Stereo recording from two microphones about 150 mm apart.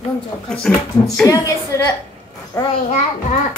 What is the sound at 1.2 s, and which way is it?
Speech, 25° left (ahead or behind).